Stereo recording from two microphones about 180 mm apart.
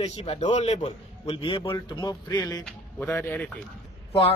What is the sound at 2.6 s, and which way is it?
Speech, 10° left (ahead or behind).